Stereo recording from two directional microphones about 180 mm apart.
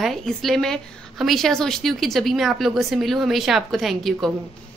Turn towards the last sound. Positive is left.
turn(degrees=0)  # may be behind; listen again after turning